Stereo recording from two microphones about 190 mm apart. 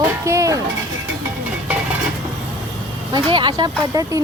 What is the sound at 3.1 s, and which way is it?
Speech, 25° right (ahead or behind).